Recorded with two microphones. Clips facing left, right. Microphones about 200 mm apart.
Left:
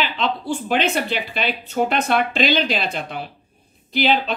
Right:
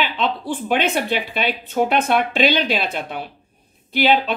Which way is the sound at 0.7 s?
55° right (ahead or behind).